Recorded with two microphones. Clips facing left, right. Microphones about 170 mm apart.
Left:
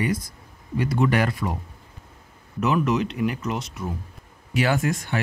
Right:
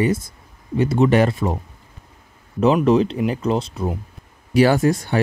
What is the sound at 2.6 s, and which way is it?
Speech, 30° right (ahead or behind).